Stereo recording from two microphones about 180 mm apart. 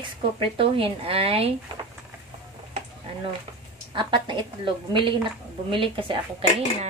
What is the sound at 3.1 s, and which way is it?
A woman's voice, 30° right (ahead or behind).